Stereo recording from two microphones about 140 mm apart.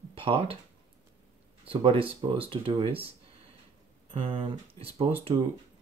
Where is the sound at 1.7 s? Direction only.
40° right (ahead or behind).